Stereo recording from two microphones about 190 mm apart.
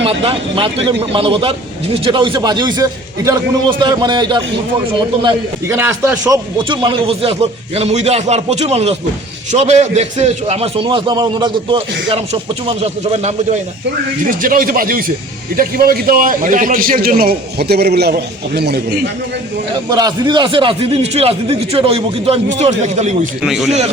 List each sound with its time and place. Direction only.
0.0 s a man's voice: 30° right (ahead or behind)
5.6 s a man's voice: 15° right (ahead or behind); by 13.6 s 35° right (ahead or behind)
14.3 s a man's voice: 50° right (ahead or behind)
19.9 s a man's voice: 20° right (ahead or behind); by 23.1 s 35° right (ahead or behind)
23.4 s speech: 5° right (ahead or behind)